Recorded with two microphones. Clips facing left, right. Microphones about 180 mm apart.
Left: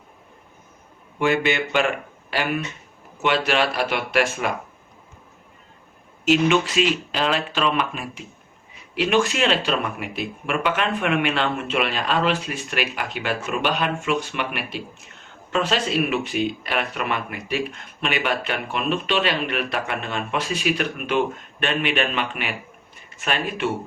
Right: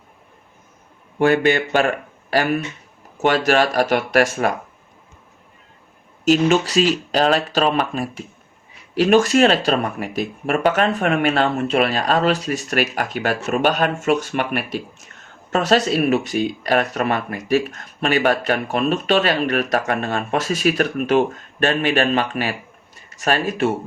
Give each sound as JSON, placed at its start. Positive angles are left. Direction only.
{"t": 1.2, "sound": "speech", "side_deg": -45}
{"t": 6.2, "sound": "speech", "side_deg": -40}